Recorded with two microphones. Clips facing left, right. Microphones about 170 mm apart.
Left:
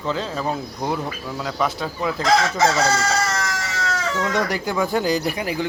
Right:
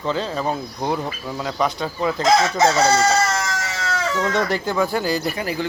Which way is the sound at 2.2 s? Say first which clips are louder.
Right 1 dB; 20° right (ahead or behind).